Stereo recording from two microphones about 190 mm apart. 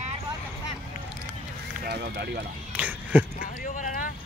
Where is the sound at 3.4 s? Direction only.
45° left (ahead or behind).